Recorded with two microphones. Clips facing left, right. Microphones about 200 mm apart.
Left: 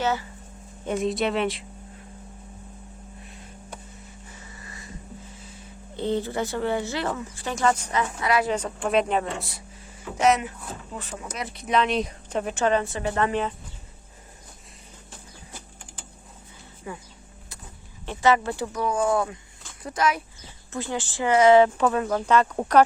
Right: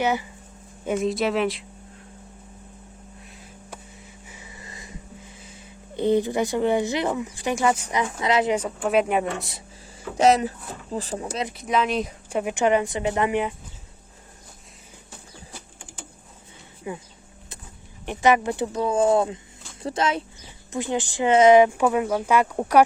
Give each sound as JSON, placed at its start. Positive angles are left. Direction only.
{"t": 0.0, "sound": "speech", "side_deg": -15}
{"t": 0.9, "sound": "speech", "side_deg": 0}
{"t": 4.3, "sound": "a sound", "side_deg": -10}
{"t": 6.0, "sound": "speech", "side_deg": -15}
{"t": 8.5, "sound": "speech", "side_deg": -5}
{"t": 10.2, "sound": "speech", "side_deg": -35}
{"t": 11.5, "sound": "speech", "side_deg": -5}
{"t": 16.9, "sound": "speech", "side_deg": -20}
{"t": 18.0, "sound": "speech", "side_deg": -15}